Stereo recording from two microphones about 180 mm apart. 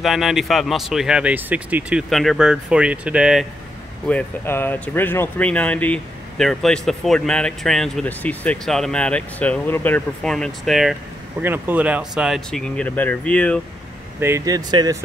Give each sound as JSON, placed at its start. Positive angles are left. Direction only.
{"t": 0.0, "sound": "speech", "side_deg": 0}
{"t": 4.1, "sound": "speech", "side_deg": 10}
{"t": 14.2, "sound": "speech", "side_deg": -15}